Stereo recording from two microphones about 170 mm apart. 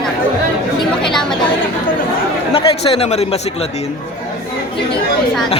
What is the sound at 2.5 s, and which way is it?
A woman's voice, 35° left (ahead or behind).